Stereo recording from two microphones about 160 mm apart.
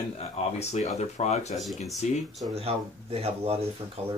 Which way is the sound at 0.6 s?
45° left (ahead or behind).